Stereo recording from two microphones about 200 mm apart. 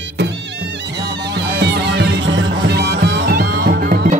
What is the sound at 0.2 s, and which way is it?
Music, 55° right (ahead or behind).